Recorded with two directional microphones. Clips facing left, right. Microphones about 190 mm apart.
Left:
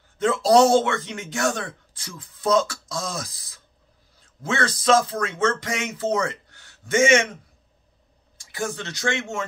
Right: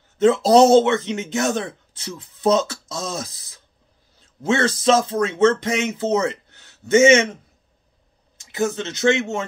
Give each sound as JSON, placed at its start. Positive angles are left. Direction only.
{"t": 0.2, "sound": "speech", "side_deg": -25}
{"t": 8.4, "sound": "speech", "side_deg": -20}